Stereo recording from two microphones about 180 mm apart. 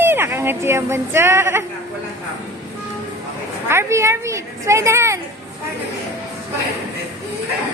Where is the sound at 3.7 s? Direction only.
15° right (ahead or behind).